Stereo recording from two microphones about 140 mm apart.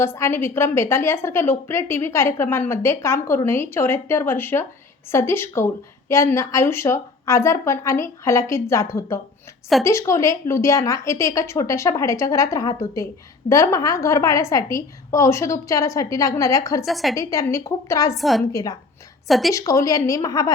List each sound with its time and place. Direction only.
0.0 s a woman's voice: 15° left (ahead or behind)
16.8 s a woman's voice: centre (ahead or behind)
17.2 s a woman's voice: 20° left (ahead or behind)
18.1 s a woman's voice: centre (ahead or behind)
18.5 s a woman's voice: 25° left (ahead or behind)
19.3 s a woman's voice: centre (ahead or behind)
19.5 s a woman's voice: 25° left (ahead or behind)